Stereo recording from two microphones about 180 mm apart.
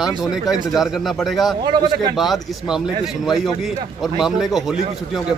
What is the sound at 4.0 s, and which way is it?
Speech, centre (ahead or behind).